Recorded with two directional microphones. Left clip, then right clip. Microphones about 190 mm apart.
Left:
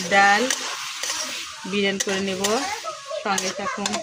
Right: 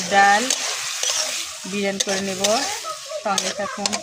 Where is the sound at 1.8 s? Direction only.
10° right (ahead or behind).